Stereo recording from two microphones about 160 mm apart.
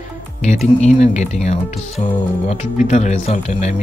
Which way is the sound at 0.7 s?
45° left (ahead or behind).